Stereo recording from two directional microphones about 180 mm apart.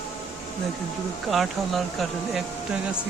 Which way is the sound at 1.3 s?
Centre (ahead or behind).